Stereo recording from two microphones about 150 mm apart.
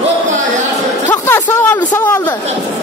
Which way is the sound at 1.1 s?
15° left (ahead or behind).